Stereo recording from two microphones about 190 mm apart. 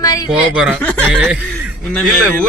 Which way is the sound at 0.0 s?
20° left (ahead or behind).